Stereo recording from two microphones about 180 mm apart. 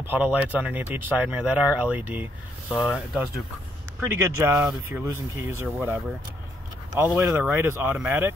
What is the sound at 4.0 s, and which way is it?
Speech, 15° right (ahead or behind).